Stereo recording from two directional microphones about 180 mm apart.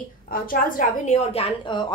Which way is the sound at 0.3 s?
50° left (ahead or behind).